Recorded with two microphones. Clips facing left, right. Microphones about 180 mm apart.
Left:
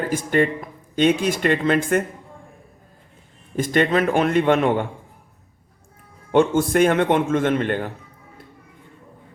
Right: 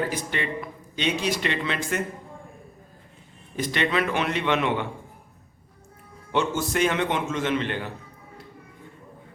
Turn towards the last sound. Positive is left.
turn(degrees=50)  # may be behind; listen again after turning